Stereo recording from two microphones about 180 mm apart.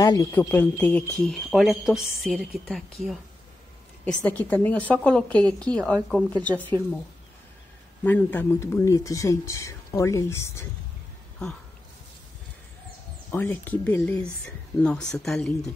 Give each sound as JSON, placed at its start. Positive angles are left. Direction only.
{"t": 0.0, "sound": "a woman's voice", "side_deg": 20}
{"t": 8.0, "sound": "speech", "side_deg": 10}
{"t": 13.3, "sound": "a woman's voice", "side_deg": 10}